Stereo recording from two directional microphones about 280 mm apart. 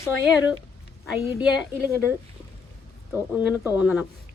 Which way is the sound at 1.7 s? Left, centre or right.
Centre.